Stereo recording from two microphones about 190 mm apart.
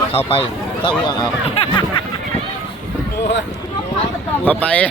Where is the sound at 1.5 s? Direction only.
25° left (ahead or behind).